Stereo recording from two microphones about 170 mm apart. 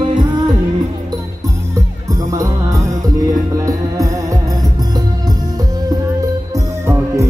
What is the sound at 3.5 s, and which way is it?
Music, 20° right (ahead or behind).